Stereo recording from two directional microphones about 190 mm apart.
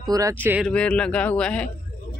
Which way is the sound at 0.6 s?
5° left (ahead or behind).